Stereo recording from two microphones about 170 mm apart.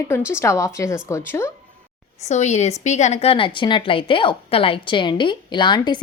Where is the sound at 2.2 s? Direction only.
40° left (ahead or behind); by 6.0 s 25° left (ahead or behind).